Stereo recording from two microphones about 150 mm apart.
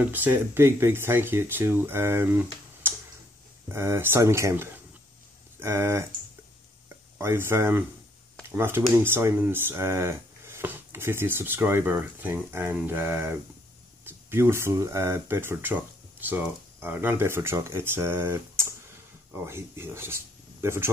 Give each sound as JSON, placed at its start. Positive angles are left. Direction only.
{"t": 0.0, "sound": "speech", "side_deg": -10}
{"t": 7.2, "sound": "speech", "side_deg": -15}